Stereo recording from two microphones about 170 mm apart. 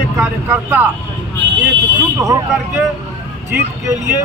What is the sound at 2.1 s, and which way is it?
Speech, 15° right (ahead or behind).